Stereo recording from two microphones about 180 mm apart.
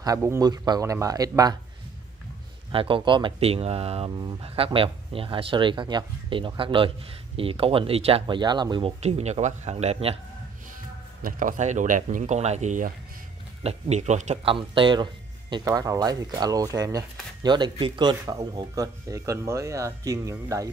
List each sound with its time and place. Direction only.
0.0 s speech: 15° right (ahead or behind)
2.7 s speech: 30° right (ahead or behind)
11.2 s speech: 45° right (ahead or behind); by 20.7 s 15° right (ahead or behind)